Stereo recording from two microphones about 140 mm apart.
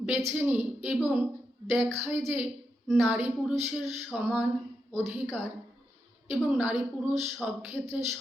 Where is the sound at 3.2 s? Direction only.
20° right (ahead or behind).